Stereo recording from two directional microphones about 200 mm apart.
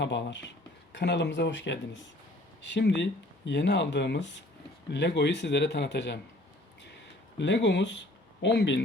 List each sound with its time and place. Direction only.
0.0 s speech: 60° left (ahead or behind)
7.3 s speech: 65° left (ahead or behind)